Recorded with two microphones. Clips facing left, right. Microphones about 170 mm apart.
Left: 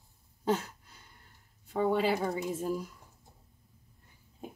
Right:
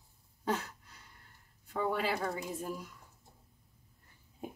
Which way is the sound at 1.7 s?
25° left (ahead or behind).